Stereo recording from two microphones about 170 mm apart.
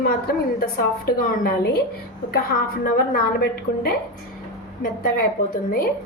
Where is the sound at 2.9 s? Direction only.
60° left (ahead or behind).